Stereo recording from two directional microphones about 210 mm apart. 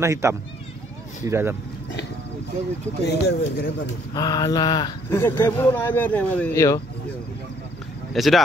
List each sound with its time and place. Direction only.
0.0 s speech: 15° right (ahead or behind)
3.1 s speech: 50° left (ahead or behind)
4.1 s speech: 20° left (ahead or behind)
8.1 s speech: centre (ahead or behind)